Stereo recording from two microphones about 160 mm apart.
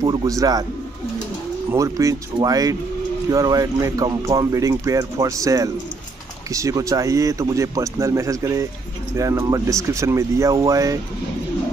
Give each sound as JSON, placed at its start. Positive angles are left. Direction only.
{"t": 0.0, "sound": "speech", "side_deg": -20}
{"t": 1.7, "sound": "speech", "side_deg": -20}